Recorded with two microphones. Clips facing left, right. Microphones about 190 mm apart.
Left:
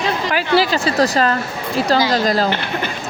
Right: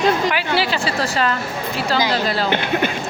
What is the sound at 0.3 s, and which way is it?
Speech, 40° left (ahead or behind).